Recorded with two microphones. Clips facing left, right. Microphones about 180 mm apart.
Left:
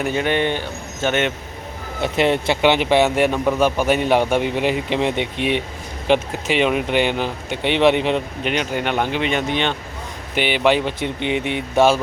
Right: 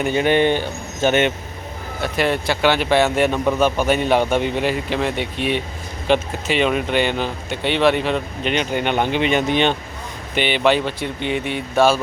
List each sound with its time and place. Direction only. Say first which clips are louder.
0.3 s speech: right 5 dB; 30° right (ahead or behind)
2.0 s speech: left 2 dB; 25° left (ahead or behind)
8.4 s speech: right 2 dB; 5° left (ahead or behind)
10.3 s speech: even; 10° left (ahead or behind)